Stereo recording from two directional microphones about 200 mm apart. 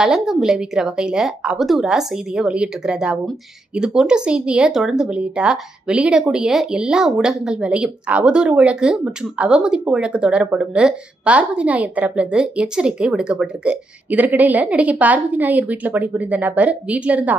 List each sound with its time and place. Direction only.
0.0 s speech: centre (ahead or behind)